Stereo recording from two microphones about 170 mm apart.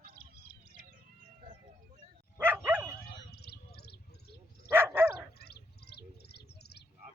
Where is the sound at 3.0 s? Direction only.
70° left (ahead or behind).